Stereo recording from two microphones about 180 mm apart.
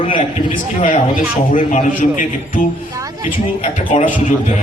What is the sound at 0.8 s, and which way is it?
A man's voice, 50° left (ahead or behind).